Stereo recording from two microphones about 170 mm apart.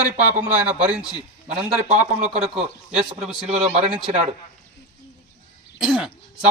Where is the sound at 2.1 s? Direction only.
40° right (ahead or behind).